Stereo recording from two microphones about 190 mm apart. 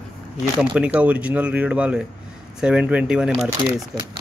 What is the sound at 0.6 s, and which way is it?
Speech, 5° right (ahead or behind).